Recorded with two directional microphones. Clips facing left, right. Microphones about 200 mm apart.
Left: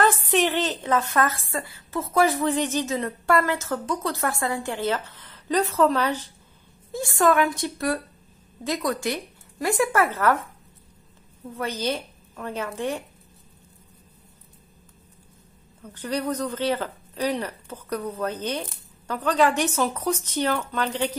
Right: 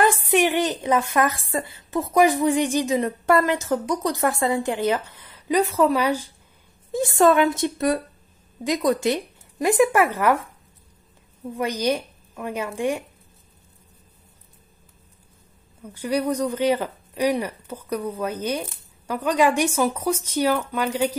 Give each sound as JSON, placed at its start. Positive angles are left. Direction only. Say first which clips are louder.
{"t": 0.0, "sound": "a woman's voice", "louder": "right 2 dB", "side_deg": -10}
{"t": 6.9, "sound": "a woman's voice", "louder": "right 4 dB", "side_deg": -20}
{"t": 11.5, "sound": "a woman's voice", "louder": "right 4 dB", "side_deg": -15}
{"t": 15.8, "sound": "a woman's voice", "louder": "right 4 dB", "side_deg": -10}